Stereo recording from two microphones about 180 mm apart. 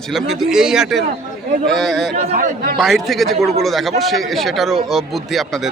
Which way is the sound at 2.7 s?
Centre (ahead or behind).